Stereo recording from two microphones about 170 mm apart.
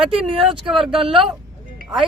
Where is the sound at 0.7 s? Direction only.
Centre (ahead or behind).